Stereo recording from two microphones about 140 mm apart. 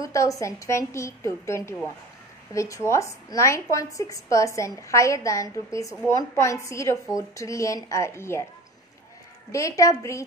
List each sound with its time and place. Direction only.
0.0 s a woman's voice: 25° left (ahead or behind)
9.5 s a woman's voice: 20° left (ahead or behind)